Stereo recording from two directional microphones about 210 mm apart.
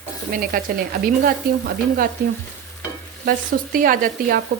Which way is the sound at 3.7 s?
40° right (ahead or behind).